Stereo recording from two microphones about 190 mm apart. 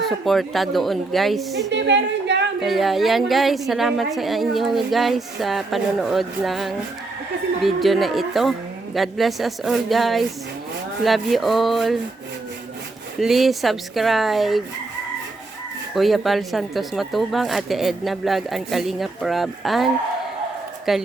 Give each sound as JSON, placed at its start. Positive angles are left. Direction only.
{"t": 0.0, "sound": "a woman's voice", "side_deg": 0}
{"t": 1.7, "sound": "a woman's voice", "side_deg": -65}
{"t": 2.6, "sound": "a woman's voice", "side_deg": 0}
{"t": 13.1, "sound": "a woman's voice", "side_deg": 0}
{"t": 16.0, "sound": "a woman's voice", "side_deg": 0}